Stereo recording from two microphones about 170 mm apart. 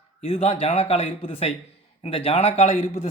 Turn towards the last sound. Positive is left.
turn(degrees=40)  # may be behind; listen again after turning